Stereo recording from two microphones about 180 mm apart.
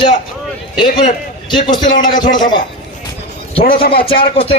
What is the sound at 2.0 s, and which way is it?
Speech, 50° left (ahead or behind).